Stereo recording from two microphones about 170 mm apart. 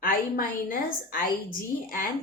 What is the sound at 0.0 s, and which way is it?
A woman's voice, 55° left (ahead or behind).